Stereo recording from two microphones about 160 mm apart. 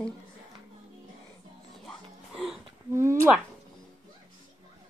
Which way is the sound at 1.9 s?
Centre (ahead or behind).